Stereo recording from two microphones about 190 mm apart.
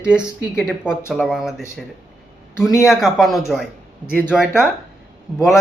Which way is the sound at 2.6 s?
15° left (ahead or behind).